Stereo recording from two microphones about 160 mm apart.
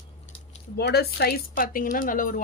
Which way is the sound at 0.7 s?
85° left.